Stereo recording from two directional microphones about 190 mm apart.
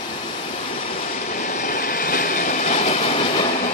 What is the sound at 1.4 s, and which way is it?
Train, 45° left (ahead or behind).